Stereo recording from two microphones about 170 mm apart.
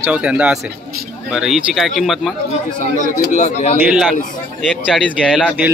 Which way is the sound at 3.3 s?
40° left (ahead or behind).